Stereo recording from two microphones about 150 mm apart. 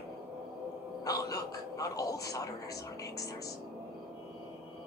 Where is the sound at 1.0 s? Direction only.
25° left (ahead or behind).